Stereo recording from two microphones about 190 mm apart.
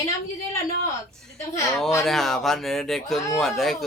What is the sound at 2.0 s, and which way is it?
A man's voice, centre (ahead or behind).